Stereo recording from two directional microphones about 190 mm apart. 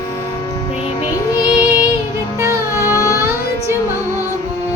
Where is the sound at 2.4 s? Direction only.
15° right (ahead or behind).